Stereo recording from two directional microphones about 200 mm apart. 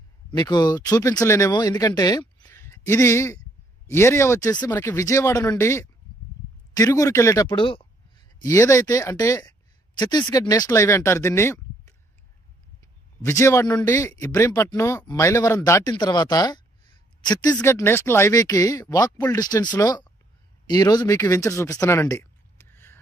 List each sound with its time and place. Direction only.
0.3 s a man's voice: 20° left (ahead or behind)
2.0 s a sound: 20° left (ahead or behind)
3.8 s a man's voice: 10° left (ahead or behind)